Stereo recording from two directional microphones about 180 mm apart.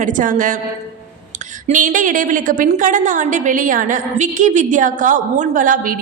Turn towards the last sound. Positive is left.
turn(degrees=-50)  # may be behind; listen again after turning